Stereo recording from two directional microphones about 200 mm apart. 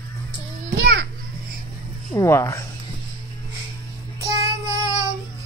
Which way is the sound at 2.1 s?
15° left (ahead or behind).